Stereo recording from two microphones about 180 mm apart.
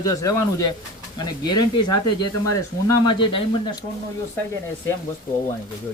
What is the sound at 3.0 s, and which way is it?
Speech, 25° left (ahead or behind).